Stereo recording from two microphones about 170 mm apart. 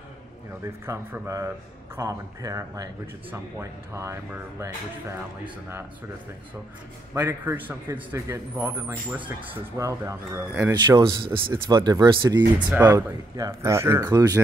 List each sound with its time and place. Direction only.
0.8 s speech: 15° right (ahead or behind)
7.2 s speech: 15° right (ahead or behind)
12.7 s speech: 15° right (ahead or behind)